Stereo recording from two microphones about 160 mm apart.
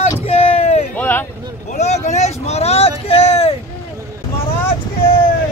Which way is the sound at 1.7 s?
45° left (ahead or behind).